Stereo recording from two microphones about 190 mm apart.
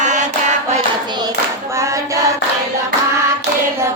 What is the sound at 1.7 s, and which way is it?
Singing, 15° right (ahead or behind).